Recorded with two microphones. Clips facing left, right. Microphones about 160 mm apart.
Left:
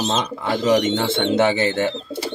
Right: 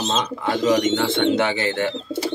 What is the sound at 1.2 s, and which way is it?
Speech, 25° left (ahead or behind).